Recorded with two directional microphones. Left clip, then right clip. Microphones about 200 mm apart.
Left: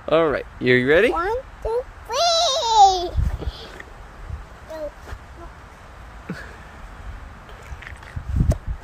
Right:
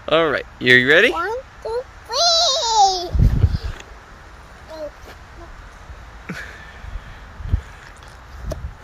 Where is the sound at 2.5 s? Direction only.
25° left (ahead or behind).